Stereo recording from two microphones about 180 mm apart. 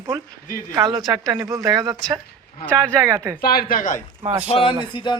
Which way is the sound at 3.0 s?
15° right (ahead or behind).